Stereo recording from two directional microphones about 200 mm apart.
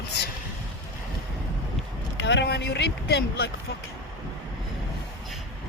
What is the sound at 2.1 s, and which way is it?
Speech, 65° left (ahead or behind).